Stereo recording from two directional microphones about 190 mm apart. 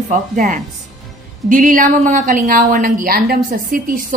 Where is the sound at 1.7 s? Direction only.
45° right (ahead or behind).